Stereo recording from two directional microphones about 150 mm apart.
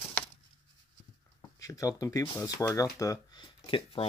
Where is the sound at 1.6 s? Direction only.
20° left (ahead or behind).